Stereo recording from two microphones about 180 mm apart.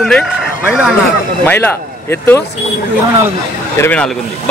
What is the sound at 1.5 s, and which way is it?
Speech, 10° left (ahead or behind).